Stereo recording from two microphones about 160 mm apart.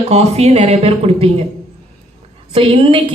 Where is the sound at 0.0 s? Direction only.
40° right (ahead or behind).